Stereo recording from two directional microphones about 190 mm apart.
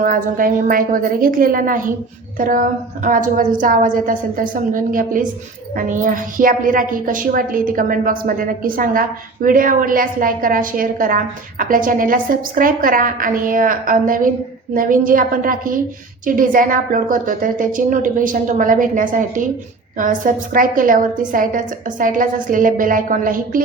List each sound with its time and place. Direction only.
0.0 s a woman's voice: 45° right (ahead or behind)